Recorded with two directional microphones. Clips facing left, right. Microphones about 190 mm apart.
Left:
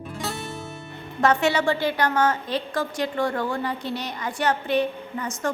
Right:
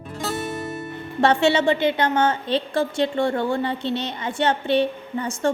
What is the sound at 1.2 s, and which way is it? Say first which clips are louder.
A woman's voice: right 3 dB; 30° right (ahead or behind).